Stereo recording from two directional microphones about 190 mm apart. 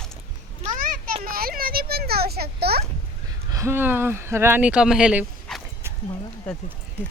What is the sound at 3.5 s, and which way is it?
Speech, 15° right (ahead or behind).